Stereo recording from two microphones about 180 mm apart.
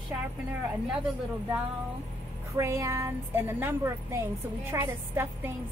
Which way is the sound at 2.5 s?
15° right (ahead or behind).